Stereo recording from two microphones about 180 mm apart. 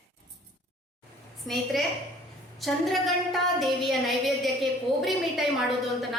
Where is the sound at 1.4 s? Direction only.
Centre (ahead or behind).